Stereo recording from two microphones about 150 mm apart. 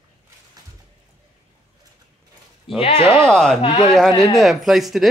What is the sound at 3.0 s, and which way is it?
Speech, 20° right (ahead or behind).